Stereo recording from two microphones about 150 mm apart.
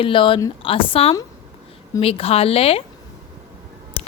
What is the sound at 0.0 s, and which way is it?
A woman's voice, 35° left (ahead or behind).